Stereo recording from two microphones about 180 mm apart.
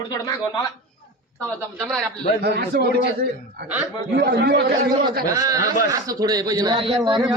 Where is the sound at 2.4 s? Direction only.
60° right (ahead or behind).